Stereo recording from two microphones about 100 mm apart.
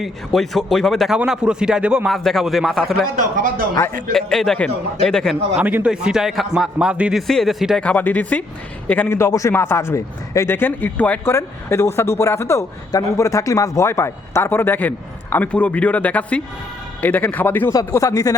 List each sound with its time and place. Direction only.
0.0 s a man's voice: centre (ahead or behind)
2.0 s a man's voice: centre (ahead or behind)
4.1 s a man's voice: 5° left (ahead or behind)
5.5 s a man's voice: 15° right (ahead or behind)
7.1 s a man's voice: centre (ahead or behind)
7.8 s speech: 15° left (ahead or behind)
9.0 s a man's voice: 25° left (ahead or behind)
11.3 s a man's voice: 25° left (ahead or behind)
17.7 s speech: 35° left (ahead or behind)